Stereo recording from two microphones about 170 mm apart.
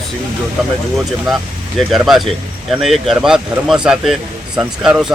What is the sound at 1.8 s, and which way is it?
Speech, centre (ahead or behind).